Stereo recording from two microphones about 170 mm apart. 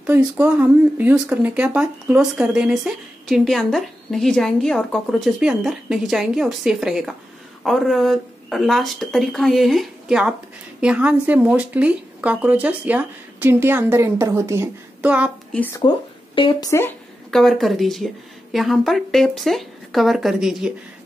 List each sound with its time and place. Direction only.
0.0 s speech: 10° right (ahead or behind)
15.5 s speech: 10° left (ahead or behind)
16.3 s speech: 25° left (ahead or behind)
17.3 s speech: centre (ahead or behind)